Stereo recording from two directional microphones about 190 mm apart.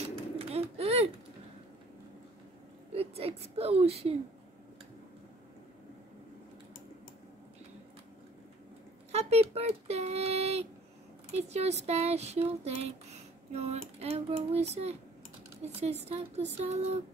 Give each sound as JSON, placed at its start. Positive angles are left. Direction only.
{"t": 0.0, "sound": "a sound", "side_deg": -30}
{"t": 2.9, "sound": "speech", "side_deg": -30}
{"t": 9.1, "sound": "speech", "side_deg": -35}